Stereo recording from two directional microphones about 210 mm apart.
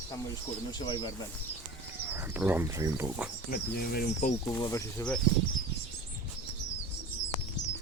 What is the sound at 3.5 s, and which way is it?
Speech, 45° left (ahead or behind).